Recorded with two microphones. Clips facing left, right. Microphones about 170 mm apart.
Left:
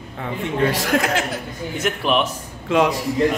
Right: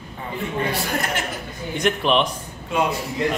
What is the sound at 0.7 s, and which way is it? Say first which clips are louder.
Speech: left 5 dB; 90° left.